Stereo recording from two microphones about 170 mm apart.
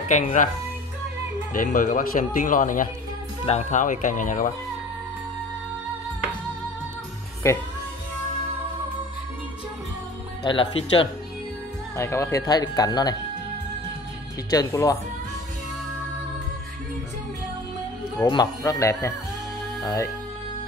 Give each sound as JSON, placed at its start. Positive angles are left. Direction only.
{"t": 0.1, "sound": "speech", "side_deg": 45}
{"t": 1.5, "sound": "speech", "side_deg": 50}
{"t": 7.4, "sound": "speech", "side_deg": 15}
{"t": 10.4, "sound": "speech", "side_deg": 30}
{"t": 12.0, "sound": "speech", "side_deg": 15}
{"t": 14.5, "sound": "speech", "side_deg": 20}
{"t": 18.3, "sound": "speech", "side_deg": 20}